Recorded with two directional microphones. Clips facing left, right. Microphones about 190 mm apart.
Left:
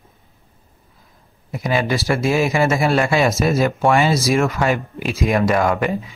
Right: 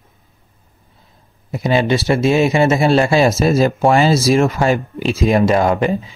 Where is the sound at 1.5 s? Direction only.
25° right (ahead or behind).